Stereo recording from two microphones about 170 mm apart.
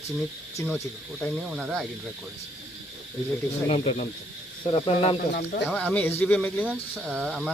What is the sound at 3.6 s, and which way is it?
Speech, 40° left (ahead or behind).